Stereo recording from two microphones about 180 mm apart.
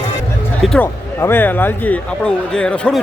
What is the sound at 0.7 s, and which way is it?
A man's voice, 10° left (ahead or behind).